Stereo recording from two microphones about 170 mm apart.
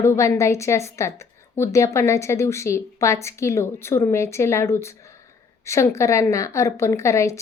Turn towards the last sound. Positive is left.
turn(degrees=15)  # may be behind; listen again after turning